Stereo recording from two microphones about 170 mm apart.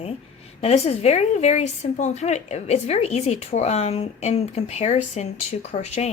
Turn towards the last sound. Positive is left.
turn(degrees=40)  # may be behind; listen again after turning